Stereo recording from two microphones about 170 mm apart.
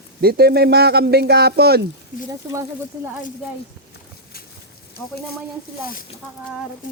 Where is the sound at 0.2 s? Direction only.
65° right (ahead or behind).